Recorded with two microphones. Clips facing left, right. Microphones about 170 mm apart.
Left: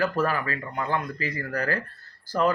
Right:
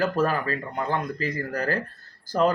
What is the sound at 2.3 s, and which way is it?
Speech, 20° right (ahead or behind).